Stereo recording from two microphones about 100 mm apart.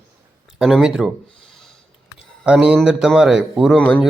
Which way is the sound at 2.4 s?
10° right (ahead or behind).